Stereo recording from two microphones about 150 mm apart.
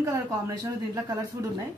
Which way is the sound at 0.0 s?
25° right (ahead or behind).